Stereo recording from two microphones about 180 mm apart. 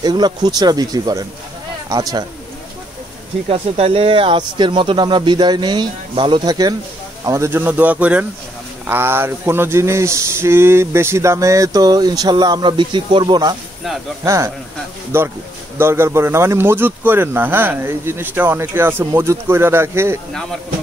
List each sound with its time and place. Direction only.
0.0 s speech: 25° right (ahead or behind)
3.4 s speech: 35° right (ahead or behind); by 20.2 s 15° right (ahead or behind)